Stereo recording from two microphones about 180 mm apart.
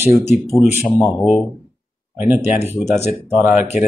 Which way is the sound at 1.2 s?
Centre (ahead or behind).